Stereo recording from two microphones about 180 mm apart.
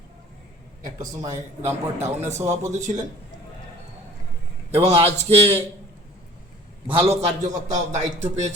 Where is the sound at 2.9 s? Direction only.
35° right (ahead or behind).